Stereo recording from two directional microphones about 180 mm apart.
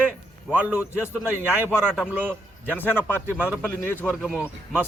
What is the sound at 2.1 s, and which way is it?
Speech, 10° right (ahead or behind).